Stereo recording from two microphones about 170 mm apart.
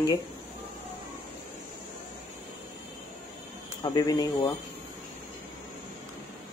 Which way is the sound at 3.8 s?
25° left (ahead or behind).